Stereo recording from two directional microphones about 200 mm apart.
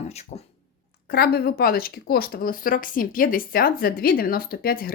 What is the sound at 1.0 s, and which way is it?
A woman's voice, 50° left (ahead or behind).